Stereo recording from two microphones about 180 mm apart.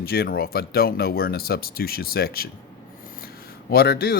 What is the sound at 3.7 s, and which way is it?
Speech, 60° left (ahead or behind).